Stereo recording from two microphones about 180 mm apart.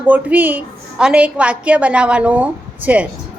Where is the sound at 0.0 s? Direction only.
10° right (ahead or behind).